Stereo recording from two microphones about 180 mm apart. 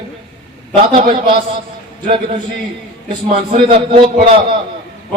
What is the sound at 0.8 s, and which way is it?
Speech, 30° right (ahead or behind).